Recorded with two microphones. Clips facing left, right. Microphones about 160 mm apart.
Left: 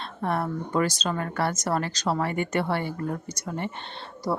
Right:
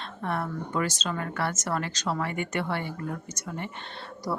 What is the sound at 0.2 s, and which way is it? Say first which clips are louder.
A woman's voice: left 4 dB; 35° left (ahead or behind).